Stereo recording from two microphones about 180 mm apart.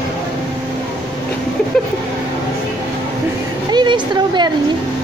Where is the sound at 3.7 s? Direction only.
25° right (ahead or behind).